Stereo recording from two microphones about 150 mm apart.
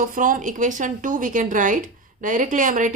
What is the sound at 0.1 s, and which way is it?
A woman's voice, 65° right (ahead or behind).